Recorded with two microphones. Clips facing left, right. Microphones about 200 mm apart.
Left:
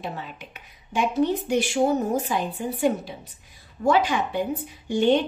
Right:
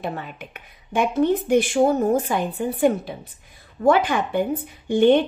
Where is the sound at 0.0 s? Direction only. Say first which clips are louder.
Right 4 dB; 55° right (ahead or behind).